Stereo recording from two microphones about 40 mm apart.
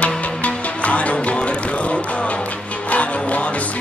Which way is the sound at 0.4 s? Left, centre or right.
Left.